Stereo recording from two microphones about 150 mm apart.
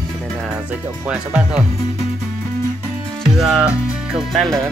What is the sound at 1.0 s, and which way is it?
Speech, 5° right (ahead or behind).